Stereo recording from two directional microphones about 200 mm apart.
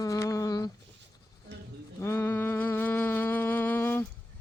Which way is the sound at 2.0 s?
15° left (ahead or behind).